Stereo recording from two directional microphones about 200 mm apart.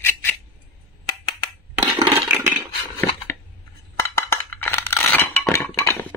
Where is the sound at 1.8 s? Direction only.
15° right (ahead or behind).